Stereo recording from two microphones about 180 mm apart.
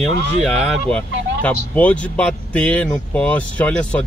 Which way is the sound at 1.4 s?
10° left (ahead or behind).